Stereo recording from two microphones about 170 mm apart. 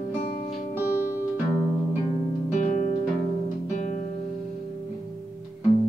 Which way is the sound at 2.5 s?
45° left (ahead or behind).